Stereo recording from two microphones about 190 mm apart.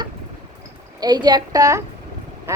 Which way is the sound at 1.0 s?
20° right (ahead or behind).